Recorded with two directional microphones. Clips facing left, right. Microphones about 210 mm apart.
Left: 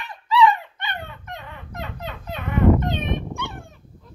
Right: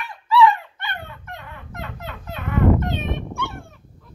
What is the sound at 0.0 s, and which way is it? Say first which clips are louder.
Dog: right 1 dB; 20° left (ahead or behind).